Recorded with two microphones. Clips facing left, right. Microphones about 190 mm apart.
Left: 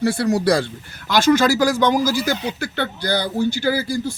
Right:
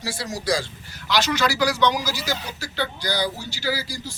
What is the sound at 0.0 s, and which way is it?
A man's voice, 60° left (ahead or behind).